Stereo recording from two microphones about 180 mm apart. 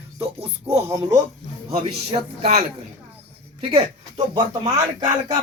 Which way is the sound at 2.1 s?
40° right (ahead or behind).